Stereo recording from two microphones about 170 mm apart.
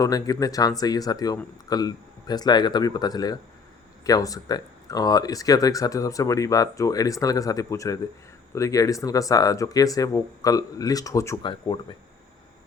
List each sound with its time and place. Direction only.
0.0 s speech: 20° left (ahead or behind)